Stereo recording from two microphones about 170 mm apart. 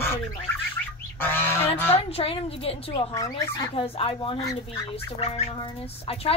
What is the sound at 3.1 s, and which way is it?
Speech, 20° left (ahead or behind).